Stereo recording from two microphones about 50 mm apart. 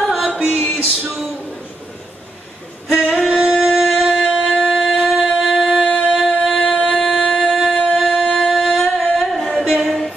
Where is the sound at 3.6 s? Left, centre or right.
Centre.